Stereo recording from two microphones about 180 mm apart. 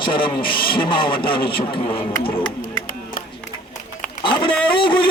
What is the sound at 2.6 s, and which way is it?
Music, 50° left (ahead or behind).